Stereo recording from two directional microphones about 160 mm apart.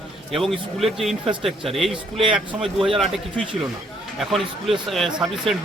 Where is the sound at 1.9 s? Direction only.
35° right (ahead or behind).